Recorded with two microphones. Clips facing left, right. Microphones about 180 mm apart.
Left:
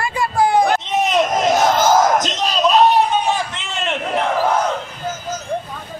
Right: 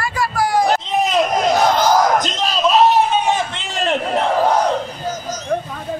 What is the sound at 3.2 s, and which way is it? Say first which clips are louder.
Battle cry: right 1 dB; 20° right (ahead or behind).